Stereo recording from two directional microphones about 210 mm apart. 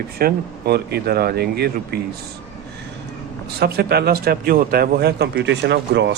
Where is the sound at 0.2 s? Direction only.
50° right (ahead or behind).